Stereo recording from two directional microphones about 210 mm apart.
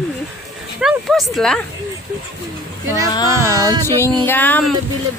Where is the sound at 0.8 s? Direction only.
Centre (ahead or behind).